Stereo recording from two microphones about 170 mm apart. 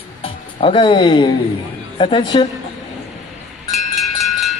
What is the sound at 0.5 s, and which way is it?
Speech, 30° left (ahead or behind).